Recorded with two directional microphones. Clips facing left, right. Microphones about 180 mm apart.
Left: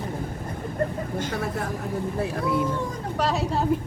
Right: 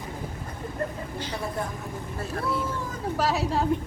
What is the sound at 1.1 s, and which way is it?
Speech, 50° left (ahead or behind).